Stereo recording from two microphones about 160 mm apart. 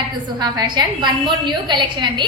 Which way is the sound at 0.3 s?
25° right (ahead or behind).